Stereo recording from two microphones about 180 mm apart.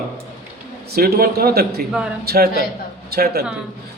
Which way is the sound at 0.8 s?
60° right (ahead or behind).